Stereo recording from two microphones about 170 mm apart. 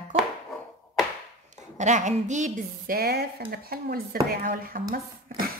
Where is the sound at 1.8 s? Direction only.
45° right (ahead or behind).